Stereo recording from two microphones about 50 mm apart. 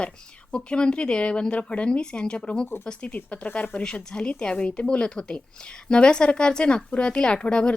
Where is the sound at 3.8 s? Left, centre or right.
Centre.